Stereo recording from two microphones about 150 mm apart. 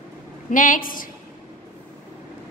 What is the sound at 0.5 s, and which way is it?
Speech, 65° left (ahead or behind).